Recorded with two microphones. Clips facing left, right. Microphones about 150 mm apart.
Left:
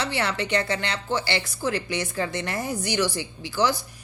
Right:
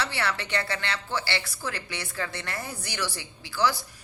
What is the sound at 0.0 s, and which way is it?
A woman's voice, 15° left (ahead or behind).